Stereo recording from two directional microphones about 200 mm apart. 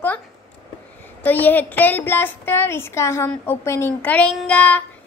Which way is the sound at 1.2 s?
10° left (ahead or behind).